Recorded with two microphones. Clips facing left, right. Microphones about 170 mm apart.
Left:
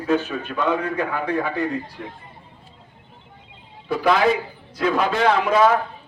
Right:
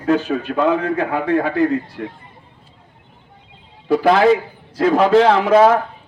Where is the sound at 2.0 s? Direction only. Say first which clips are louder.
Right 7 dB; 65° right (ahead or behind).